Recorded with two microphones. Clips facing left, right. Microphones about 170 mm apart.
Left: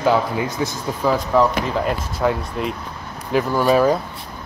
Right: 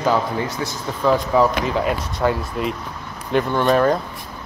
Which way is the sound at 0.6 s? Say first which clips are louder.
Left 3 dB; 20° left (ahead or behind).